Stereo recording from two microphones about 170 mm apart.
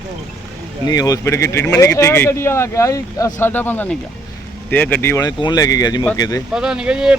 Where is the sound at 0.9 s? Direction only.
20° left (ahead or behind).